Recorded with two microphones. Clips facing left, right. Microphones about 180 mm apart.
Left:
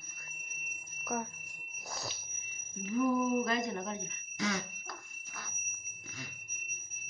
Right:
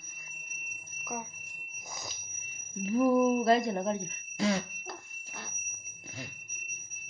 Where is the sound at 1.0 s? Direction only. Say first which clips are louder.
Left 3 dB; 10° right (ahead or behind).